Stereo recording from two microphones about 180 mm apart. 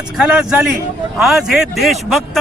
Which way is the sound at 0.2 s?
5° right (ahead or behind).